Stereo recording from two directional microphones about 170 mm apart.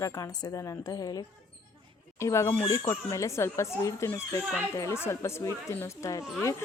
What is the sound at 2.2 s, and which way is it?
A woman's voice, 15° left (ahead or behind).